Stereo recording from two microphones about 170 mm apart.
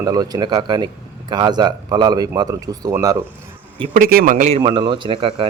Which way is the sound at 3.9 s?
55° right (ahead or behind).